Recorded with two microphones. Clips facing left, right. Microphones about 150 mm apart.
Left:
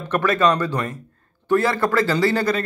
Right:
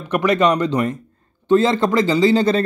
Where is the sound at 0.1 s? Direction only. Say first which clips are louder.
Right 2 dB; 15° right (ahead or behind).